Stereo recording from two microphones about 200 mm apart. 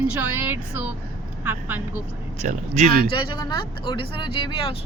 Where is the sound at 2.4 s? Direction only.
35° right (ahead or behind).